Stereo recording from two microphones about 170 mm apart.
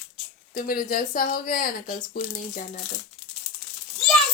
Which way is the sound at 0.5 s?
60° left (ahead or behind).